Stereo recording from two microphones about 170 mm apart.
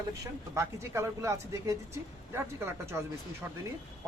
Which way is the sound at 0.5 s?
15° right (ahead or behind).